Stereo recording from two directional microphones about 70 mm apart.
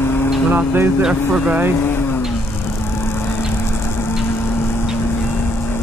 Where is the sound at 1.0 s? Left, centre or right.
Centre.